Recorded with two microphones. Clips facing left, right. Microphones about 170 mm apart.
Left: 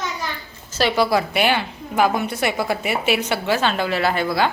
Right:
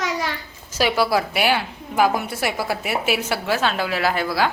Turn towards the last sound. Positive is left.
turn(degrees=0)  # may be behind; listen again after turning